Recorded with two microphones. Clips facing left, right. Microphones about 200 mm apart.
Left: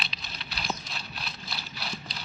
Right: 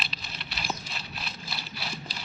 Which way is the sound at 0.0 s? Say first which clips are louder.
Right 1 dB; 5° right (ahead or behind).